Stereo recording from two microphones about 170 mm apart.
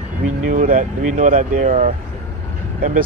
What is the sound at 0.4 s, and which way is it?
Speech, 50° right (ahead or behind).